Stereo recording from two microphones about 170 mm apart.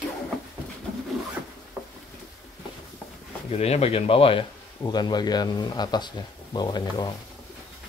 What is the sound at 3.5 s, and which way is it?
A man's voice, 40° left (ahead or behind).